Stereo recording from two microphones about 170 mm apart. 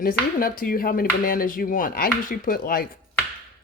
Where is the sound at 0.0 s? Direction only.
55° left (ahead or behind).